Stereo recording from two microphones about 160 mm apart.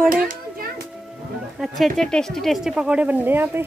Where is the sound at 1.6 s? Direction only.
5° right (ahead or behind).